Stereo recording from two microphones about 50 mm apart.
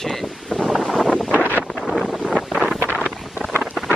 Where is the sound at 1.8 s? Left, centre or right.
Centre.